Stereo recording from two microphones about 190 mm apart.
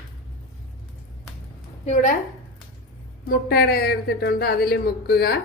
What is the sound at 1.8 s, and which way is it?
Speech, 40° left (ahead or behind).